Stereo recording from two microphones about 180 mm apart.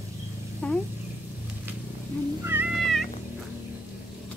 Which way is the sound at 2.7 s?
Centre (ahead or behind).